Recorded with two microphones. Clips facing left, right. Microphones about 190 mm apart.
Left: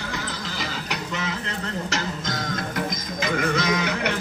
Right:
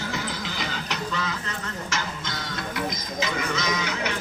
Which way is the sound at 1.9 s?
45° left (ahead or behind).